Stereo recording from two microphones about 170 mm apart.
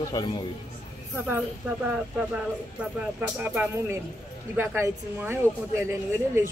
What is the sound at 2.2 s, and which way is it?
Speech, 5° right (ahead or behind).